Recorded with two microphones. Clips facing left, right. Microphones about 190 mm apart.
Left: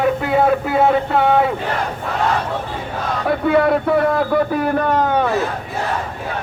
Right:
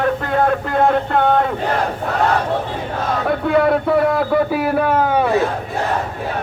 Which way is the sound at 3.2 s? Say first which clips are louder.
Left 1 dB; centre (ahead or behind).